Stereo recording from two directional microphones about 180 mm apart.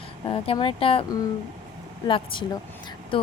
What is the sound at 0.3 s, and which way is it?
A woman's voice, 30° left (ahead or behind).